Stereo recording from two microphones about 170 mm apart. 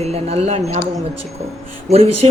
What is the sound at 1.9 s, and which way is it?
Speech, 35° right (ahead or behind).